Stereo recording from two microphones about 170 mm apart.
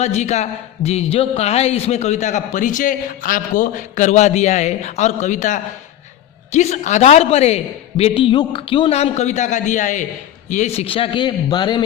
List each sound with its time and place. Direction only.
0.0 s a man's voice: 40° left (ahead or behind); by 11.8 s 25° left (ahead or behind)